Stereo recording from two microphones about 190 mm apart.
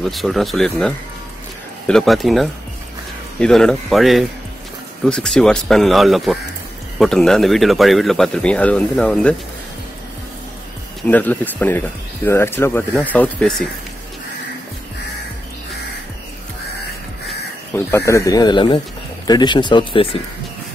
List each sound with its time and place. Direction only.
0.0 s speech: centre (ahead or behind)
11.1 s speech: 10° left (ahead or behind)
17.7 s speech: 15° left (ahead or behind)